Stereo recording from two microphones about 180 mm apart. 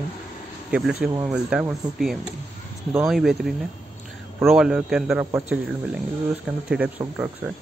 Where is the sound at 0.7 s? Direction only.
5° right (ahead or behind).